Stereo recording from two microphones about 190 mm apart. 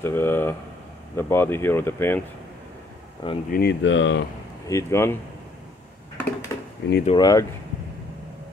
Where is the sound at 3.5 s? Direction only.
55° left (ahead or behind); by 4.2 s 75° left (ahead or behind).